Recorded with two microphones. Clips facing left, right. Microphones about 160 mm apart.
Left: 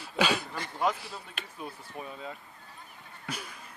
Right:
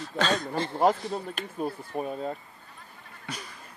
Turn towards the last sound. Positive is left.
turn(degrees=5)  # may be behind; listen again after turning